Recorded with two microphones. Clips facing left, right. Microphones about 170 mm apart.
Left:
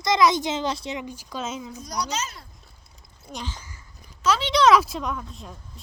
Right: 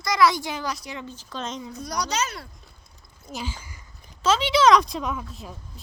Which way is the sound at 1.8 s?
70° right (ahead or behind).